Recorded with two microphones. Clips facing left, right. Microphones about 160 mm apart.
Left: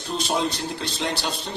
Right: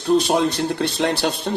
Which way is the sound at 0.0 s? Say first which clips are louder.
Right 8 dB; 60° right (ahead or behind).